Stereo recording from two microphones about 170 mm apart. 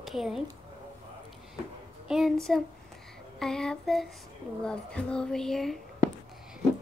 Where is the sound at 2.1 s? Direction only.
Centre (ahead or behind).